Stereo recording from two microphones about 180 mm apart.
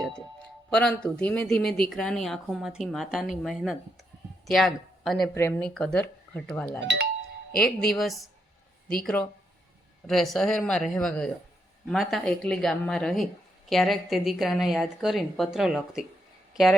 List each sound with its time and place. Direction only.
0.7 s speech: 5° left (ahead or behind)
5.3 s speech: 15° left (ahead or behind)
7.5 s speech: 55° left (ahead or behind)
7.9 s speech: centre (ahead or behind)
10.1 s speech: centre (ahead or behind)